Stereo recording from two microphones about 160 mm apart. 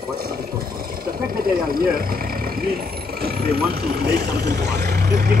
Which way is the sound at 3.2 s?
80° right.